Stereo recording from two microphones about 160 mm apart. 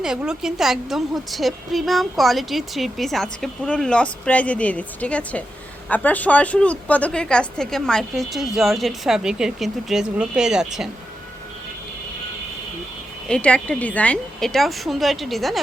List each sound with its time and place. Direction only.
0.0 s a woman's voice: 5° right (ahead or behind)
13.2 s a woman's voice: 5° left (ahead or behind)